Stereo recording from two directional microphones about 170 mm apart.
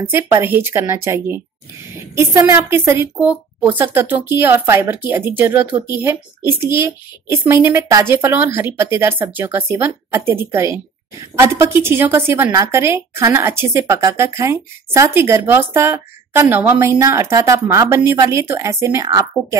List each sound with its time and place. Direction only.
0.0 s a woman's voice: 15° right (ahead or behind)